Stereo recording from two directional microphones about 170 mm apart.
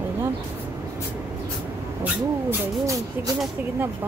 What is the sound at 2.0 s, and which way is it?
A woman's voice, 15° right (ahead or behind).